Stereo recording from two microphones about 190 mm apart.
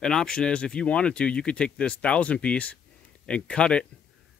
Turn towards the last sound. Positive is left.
turn(degrees=5)  # may be behind; listen again after turning